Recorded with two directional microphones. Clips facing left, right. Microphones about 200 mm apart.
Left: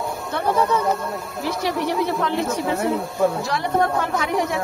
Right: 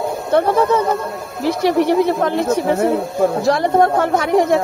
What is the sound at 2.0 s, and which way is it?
Speech, 50° right (ahead or behind).